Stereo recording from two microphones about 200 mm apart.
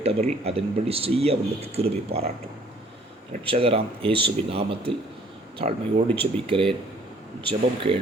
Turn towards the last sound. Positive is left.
turn(degrees=-25)  # may be behind; listen again after turning